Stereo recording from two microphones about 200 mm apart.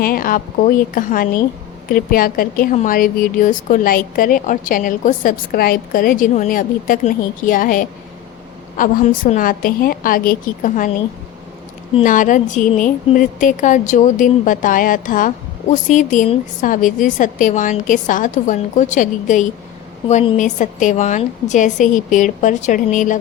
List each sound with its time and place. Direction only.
0.0 s a woman's voice: 45° left (ahead or behind)
12.0 s a woman's voice: 40° left (ahead or behind)